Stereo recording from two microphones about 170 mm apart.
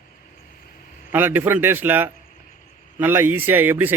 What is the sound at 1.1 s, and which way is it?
Speech, 10° right (ahead or behind).